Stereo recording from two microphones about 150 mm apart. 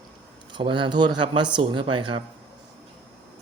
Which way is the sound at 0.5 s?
35° right (ahead or behind).